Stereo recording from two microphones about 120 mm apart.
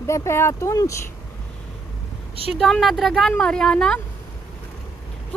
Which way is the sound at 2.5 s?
Centre (ahead or behind).